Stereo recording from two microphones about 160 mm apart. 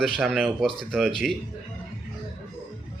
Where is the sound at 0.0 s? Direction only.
Centre (ahead or behind).